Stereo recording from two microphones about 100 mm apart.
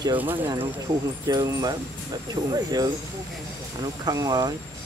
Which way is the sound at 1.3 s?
40° right (ahead or behind).